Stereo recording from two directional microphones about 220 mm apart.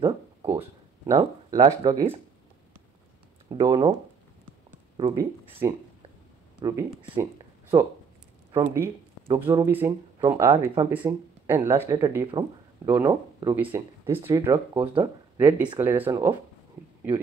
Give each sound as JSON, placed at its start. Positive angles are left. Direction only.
{"t": 0.5, "sound": "a sound", "side_deg": -10}
{"t": 1.1, "sound": "speech", "side_deg": -15}
{"t": 3.4, "sound": "speech", "side_deg": -15}
{"t": 4.9, "sound": "speech", "side_deg": -20}
{"t": 10.9, "sound": "speech", "side_deg": -10}